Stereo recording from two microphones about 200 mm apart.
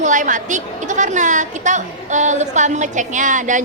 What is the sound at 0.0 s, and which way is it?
A woman's voice, 40° right (ahead or behind).